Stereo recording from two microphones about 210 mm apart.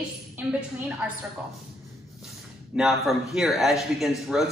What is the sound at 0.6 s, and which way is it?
Speech, 5° right (ahead or behind).